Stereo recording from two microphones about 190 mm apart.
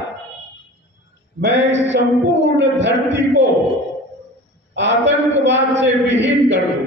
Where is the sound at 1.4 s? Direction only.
70° right (ahead or behind).